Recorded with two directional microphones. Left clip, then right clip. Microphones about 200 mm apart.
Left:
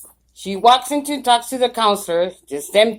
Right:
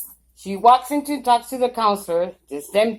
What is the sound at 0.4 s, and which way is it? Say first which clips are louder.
Speech: left 1 dB; 20° left (ahead or behind).